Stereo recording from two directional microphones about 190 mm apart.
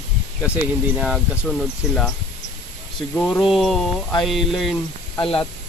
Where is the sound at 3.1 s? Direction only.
10° left (ahead or behind).